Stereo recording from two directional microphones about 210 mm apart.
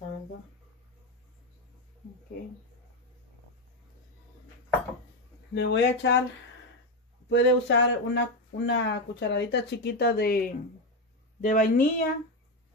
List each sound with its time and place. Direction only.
5.5 s speech: 55° left (ahead or behind)
7.2 s a woman's voice: 60° left (ahead or behind); by 12.1 s 40° left (ahead or behind)